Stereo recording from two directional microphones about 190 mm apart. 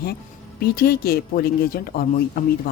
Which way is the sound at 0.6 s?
55° left (ahead or behind).